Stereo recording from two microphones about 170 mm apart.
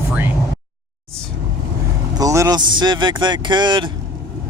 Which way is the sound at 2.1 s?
20° right (ahead or behind).